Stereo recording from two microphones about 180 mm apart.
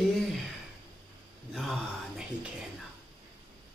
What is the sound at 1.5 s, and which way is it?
Speech, centre (ahead or behind).